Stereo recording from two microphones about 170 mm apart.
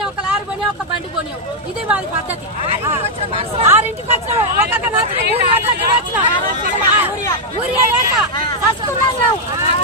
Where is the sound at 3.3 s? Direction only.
35° right (ahead or behind).